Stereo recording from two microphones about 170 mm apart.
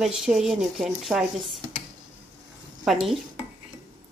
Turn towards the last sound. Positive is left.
turn(degrees=0)  # may be behind; listen again after turning